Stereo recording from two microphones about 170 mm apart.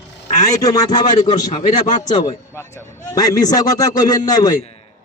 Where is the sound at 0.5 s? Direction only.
20° left (ahead or behind).